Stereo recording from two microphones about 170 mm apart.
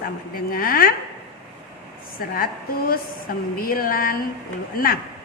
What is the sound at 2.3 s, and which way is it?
A woman's voice, 60° left (ahead or behind).